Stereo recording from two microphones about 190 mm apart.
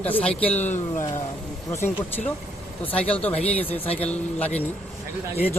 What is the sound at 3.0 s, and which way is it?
Speech, 5° left (ahead or behind).